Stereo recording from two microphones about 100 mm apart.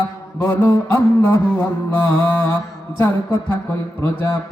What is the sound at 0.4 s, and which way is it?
Mantra, 20° left (ahead or behind).